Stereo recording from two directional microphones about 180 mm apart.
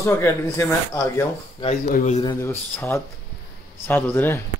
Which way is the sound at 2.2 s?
15° left (ahead or behind).